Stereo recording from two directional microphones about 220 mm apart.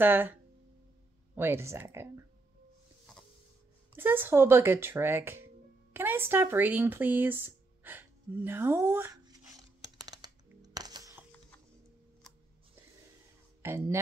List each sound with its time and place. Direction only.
0.0 s speech: 10° right (ahead or behind)
3.9 s speech: 10° right (ahead or behind)
10.0 s a sound: 20° right (ahead or behind)
13.6 s speech: 10° right (ahead or behind)